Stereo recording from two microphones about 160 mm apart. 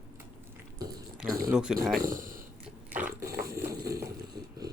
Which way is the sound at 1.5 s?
5° right (ahead or behind).